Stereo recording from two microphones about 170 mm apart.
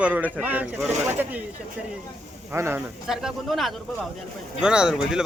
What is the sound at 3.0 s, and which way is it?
Speech, 5° right (ahead or behind).